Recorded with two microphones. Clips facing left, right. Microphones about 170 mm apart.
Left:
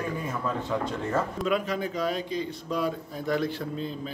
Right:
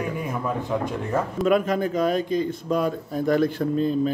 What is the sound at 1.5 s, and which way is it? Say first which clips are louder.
A man's voice: right 7 dB; 50° right (ahead or behind).